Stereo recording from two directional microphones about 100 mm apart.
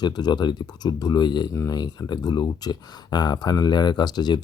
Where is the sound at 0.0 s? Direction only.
45° left (ahead or behind).